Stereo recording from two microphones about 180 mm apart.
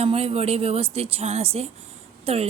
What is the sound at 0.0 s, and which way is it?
A woman's voice, 35° right (ahead or behind).